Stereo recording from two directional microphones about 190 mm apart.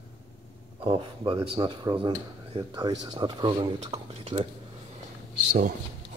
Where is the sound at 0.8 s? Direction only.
30° right (ahead or behind).